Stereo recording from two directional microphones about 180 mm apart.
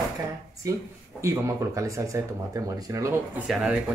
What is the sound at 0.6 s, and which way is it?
Speech, 20° right (ahead or behind).